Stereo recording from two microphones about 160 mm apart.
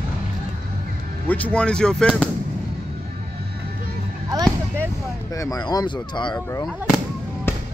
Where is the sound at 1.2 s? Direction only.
10° left (ahead or behind).